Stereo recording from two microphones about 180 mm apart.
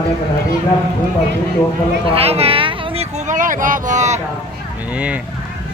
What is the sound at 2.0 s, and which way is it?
Speech, 35° right (ahead or behind).